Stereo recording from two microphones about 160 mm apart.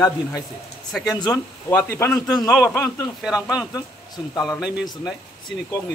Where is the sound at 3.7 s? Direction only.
25° left (ahead or behind).